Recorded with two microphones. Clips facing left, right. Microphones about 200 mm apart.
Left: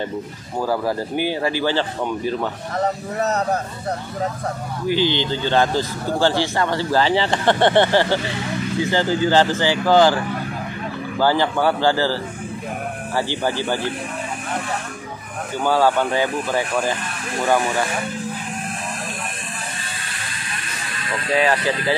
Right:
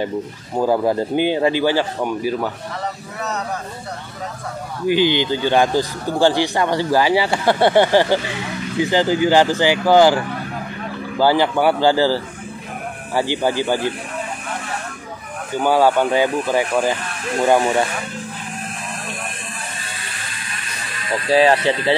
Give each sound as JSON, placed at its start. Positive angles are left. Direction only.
{"t": 0.6, "sound": "speech", "side_deg": -20}
{"t": 2.8, "sound": "a man's voice", "side_deg": 40}
{"t": 4.8, "sound": "speech", "side_deg": -15}
{"t": 15.6, "sound": "speech", "side_deg": -15}
{"t": 21.3, "sound": "speech", "side_deg": -30}